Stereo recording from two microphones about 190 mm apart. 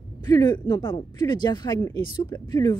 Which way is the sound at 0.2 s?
20° left (ahead or behind).